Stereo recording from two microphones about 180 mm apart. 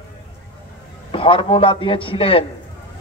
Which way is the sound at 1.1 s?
30° left (ahead or behind).